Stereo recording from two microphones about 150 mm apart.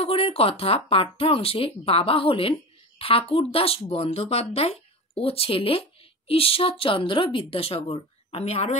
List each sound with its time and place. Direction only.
0.0 s speech: 40° left (ahead or behind)